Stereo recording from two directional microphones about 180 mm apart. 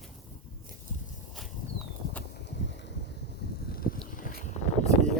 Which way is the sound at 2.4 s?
75° left (ahead or behind).